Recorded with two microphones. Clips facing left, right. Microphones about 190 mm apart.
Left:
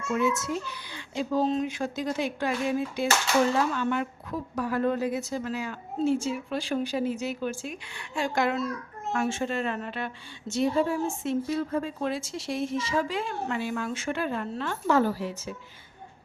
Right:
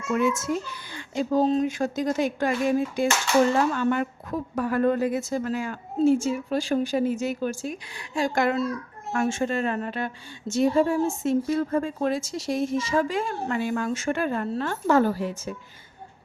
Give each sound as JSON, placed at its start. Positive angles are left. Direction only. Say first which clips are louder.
{"t": 0.1, "sound": "a woman's voice", "louder": "right 3 dB", "side_deg": -50}